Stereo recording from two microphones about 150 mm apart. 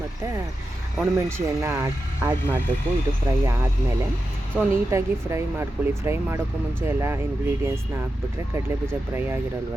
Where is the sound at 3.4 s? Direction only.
20° right (ahead or behind).